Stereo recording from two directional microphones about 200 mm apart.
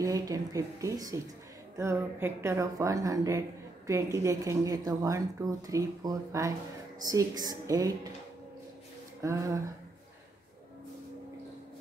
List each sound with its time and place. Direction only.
0.0 s speech: 15° right (ahead or behind)
9.2 s speech: 15° right (ahead or behind)